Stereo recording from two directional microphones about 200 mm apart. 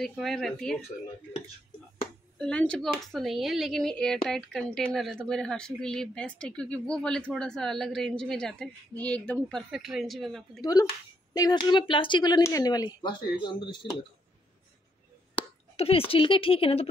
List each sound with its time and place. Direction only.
0.0 s speech: centre (ahead or behind)
2.3 s speech: 5° left (ahead or behind)
10.6 s speech: 20° left (ahead or behind)
15.4 s a sound: 10° left (ahead or behind)
15.7 s speech: 30° left (ahead or behind)